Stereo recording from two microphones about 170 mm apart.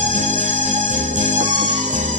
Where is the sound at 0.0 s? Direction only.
45° right (ahead or behind).